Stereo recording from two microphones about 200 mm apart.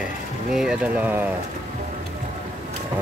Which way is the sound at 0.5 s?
5° right (ahead or behind).